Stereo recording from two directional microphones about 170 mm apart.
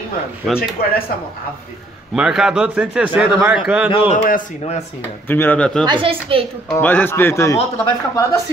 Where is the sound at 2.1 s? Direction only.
Centre (ahead or behind).